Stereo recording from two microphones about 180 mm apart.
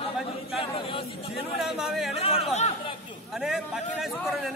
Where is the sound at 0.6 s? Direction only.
30° left (ahead or behind).